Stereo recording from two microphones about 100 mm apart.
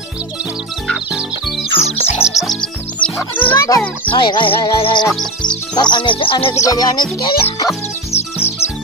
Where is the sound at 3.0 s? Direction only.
10° left (ahead or behind).